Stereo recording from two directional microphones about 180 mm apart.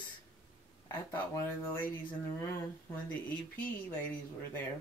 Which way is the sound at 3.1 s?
10° left (ahead or behind).